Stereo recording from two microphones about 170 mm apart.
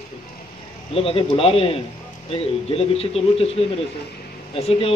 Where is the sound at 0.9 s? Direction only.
35° left (ahead or behind).